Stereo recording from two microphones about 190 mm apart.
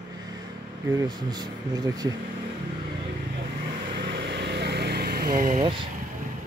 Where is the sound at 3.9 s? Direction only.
65° right (ahead or behind); by 5.7 s 40° right (ahead or behind).